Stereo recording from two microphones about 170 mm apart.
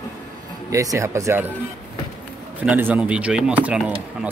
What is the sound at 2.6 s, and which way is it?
Speech, 10° right (ahead or behind).